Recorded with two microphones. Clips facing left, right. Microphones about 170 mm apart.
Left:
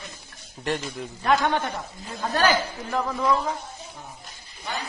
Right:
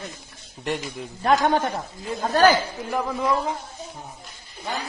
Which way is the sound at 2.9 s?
15° right (ahead or behind).